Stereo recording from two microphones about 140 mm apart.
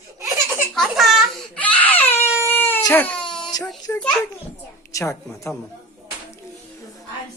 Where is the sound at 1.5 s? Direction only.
10° left (ahead or behind).